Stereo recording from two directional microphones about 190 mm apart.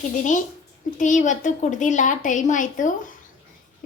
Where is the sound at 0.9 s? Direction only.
40° left (ahead or behind).